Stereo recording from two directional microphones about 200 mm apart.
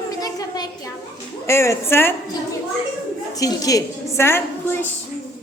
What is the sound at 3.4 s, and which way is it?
A woman's voice, 15° left (ahead or behind).